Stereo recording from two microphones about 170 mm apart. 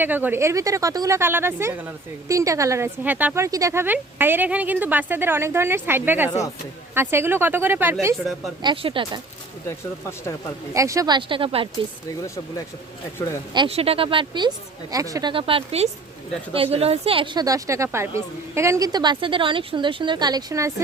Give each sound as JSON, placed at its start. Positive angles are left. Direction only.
{"t": 0.0, "sound": "speech", "side_deg": -10}
{"t": 8.6, "sound": "a woman's voice", "side_deg": -30}
{"t": 9.6, "sound": "speech", "side_deg": 15}
{"t": 10.8, "sound": "a woman's voice", "side_deg": -20}
{"t": 13.5, "sound": "a woman's voice", "side_deg": -30}